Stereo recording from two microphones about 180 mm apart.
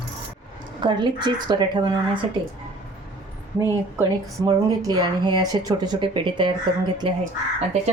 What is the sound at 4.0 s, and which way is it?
A woman's voice, 20° right (ahead or behind).